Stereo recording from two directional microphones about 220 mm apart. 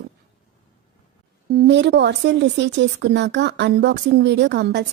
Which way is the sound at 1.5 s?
50° right (ahead or behind).